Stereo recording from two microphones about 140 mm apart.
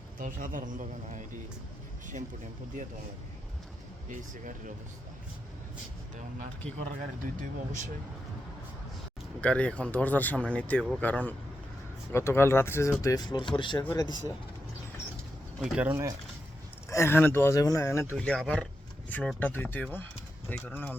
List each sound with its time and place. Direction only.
0.2 s a man's voice: 75° right (ahead or behind)
4.1 s speech: 65° right (ahead or behind)
7.0 s speech: 65° right (ahead or behind)
9.4 s speech: 10° left (ahead or behind); by 14.3 s 25° left (ahead or behind)
15.6 s speech: 10° right (ahead or behind)
16.9 s speech: 20° left (ahead or behind)
18.2 s speech: 5° left (ahead or behind)